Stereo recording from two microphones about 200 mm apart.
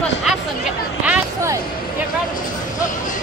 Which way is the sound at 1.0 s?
15° right (ahead or behind).